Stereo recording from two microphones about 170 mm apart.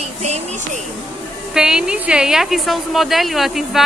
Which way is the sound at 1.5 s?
5° right (ahead or behind).